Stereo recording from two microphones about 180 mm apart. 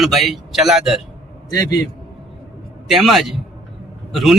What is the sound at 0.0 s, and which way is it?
A man's voice, centre (ahead or behind).